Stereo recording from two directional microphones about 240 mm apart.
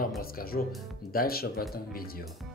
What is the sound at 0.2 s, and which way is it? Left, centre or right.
Speech, left.